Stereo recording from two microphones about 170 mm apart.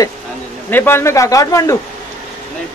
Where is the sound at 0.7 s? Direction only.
15° left (ahead or behind).